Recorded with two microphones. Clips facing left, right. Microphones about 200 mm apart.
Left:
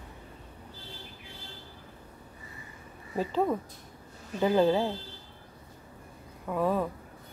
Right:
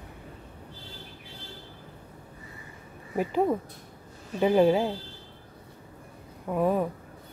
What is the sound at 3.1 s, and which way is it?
Speech, 15° right (ahead or behind).